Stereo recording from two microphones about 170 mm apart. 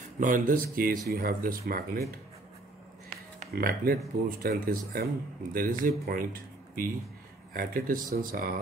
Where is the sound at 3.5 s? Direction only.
60° right (ahead or behind).